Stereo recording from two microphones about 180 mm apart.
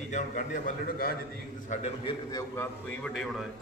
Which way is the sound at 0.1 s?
45° left (ahead or behind).